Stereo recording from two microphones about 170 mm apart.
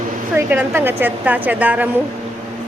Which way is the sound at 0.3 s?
15° right (ahead or behind).